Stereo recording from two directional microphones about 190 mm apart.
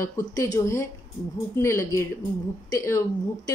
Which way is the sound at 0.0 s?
15° left (ahead or behind).